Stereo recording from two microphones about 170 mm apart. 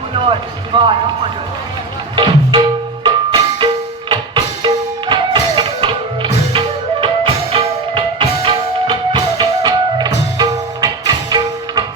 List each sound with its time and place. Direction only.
0.2 s speech: 30° right (ahead or behind)
2.1 s music: 30° right (ahead or behind)